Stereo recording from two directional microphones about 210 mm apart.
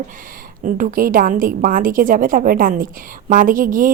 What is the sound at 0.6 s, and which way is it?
A woman's voice, 40° right (ahead or behind).